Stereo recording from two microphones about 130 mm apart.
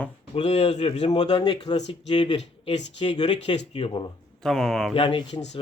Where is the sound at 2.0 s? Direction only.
50° left (ahead or behind).